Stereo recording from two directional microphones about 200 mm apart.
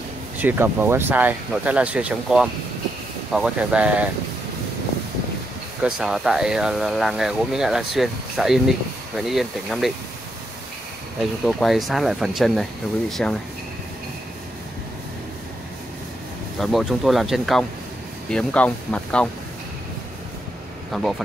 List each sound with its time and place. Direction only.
0.4 s speech: 10° right (ahead or behind)
5.8 s speech: 5° right (ahead or behind)
11.4 s speech: centre (ahead or behind)
16.5 s speech: centre (ahead or behind)
20.9 s speech: centre (ahead or behind)